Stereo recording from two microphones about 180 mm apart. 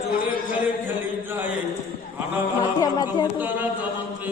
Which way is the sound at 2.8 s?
20° left (ahead or behind).